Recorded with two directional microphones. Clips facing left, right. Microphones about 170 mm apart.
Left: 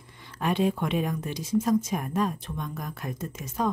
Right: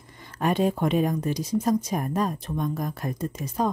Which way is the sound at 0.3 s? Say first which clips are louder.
Right 2 dB; 45° right (ahead or behind).